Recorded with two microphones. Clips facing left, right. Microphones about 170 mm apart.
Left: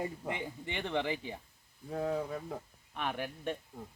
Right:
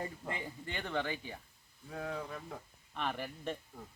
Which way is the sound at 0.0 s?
15° left (ahead or behind).